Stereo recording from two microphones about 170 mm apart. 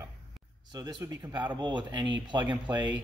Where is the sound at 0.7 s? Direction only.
20° right (ahead or behind).